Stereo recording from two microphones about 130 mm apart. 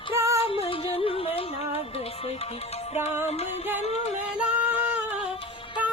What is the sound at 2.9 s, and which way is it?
Music, 55° left (ahead or behind).